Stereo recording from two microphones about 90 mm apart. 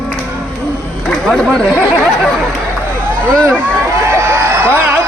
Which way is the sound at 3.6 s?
30° right (ahead or behind).